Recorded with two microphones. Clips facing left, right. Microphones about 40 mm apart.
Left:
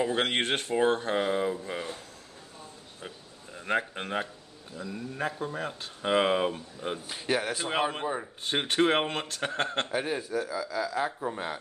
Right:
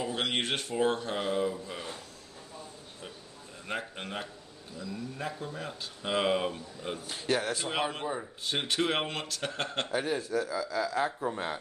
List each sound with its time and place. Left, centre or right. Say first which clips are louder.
0.0 s speech: left 4 dB; left
3.6 s speech: left 7 dB; left
6.0 s speech: left 4 dB; left
7.2 s speech: even; centre
8.5 s speech: left 5 dB; left
9.8 s a man's voice: even; centre